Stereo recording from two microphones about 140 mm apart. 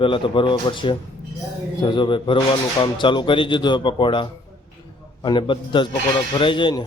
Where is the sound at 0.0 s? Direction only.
35° left (ahead or behind).